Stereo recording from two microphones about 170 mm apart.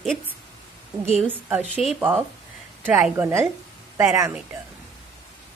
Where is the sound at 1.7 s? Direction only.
Centre (ahead or behind).